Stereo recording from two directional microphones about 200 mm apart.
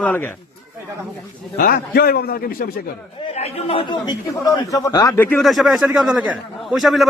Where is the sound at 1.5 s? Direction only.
50° left (ahead or behind).